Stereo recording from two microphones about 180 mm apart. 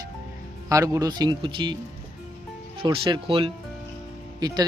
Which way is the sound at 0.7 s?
20° right (ahead or behind).